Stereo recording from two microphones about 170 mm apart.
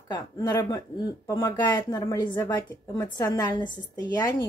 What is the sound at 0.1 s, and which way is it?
Speech, 20° left (ahead or behind).